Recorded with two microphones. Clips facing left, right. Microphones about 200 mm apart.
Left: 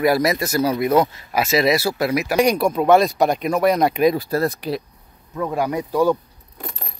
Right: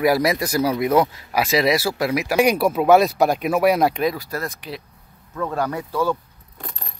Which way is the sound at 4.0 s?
25° left (ahead or behind).